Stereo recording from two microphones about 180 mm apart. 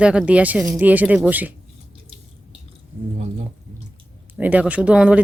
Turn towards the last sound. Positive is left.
turn(degrees=-5)  # may be behind; listen again after turning